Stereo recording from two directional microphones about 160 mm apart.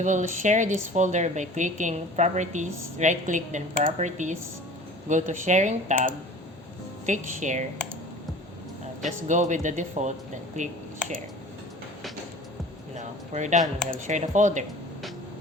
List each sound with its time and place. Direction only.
0.0 s speech: 50° right (ahead or behind)
7.0 s speech: 50° right (ahead or behind)
9.0 s speech: 50° right (ahead or behind)
13.0 s speech: 50° right (ahead or behind)